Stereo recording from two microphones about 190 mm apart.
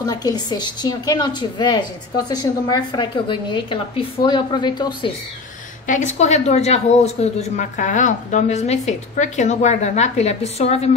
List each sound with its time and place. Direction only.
0.0 s a woman's voice: 20° left (ahead or behind)
5.9 s a woman's voice: 40° left (ahead or behind)